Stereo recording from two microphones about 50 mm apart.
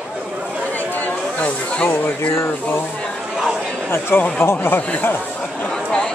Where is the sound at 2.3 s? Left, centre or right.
Left.